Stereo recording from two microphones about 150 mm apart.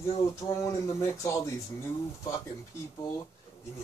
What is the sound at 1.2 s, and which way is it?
Speech, 20° left (ahead or behind).